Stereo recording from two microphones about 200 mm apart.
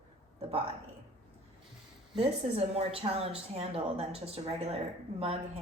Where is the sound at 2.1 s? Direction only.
30° right (ahead or behind).